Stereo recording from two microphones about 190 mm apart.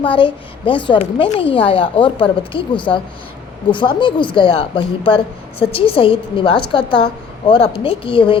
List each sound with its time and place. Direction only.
0.0 s speech: 25° left (ahead or behind)